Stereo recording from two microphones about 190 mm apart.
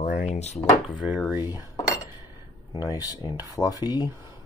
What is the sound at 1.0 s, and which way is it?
Speech, 5° right (ahead or behind).